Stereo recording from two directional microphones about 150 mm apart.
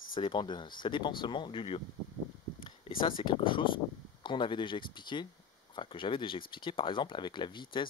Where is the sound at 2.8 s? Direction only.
35° left (ahead or behind).